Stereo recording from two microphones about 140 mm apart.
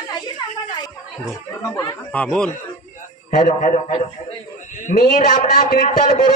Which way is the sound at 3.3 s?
65° left (ahead or behind).